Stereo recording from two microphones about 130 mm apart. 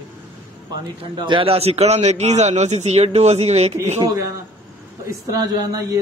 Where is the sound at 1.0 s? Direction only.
40° right (ahead or behind); by 3.7 s 55° right (ahead or behind).